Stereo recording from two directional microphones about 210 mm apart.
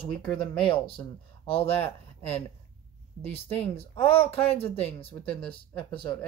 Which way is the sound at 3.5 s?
30° left (ahead or behind).